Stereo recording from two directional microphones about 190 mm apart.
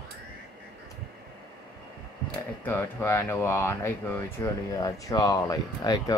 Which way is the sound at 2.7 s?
10° left (ahead or behind).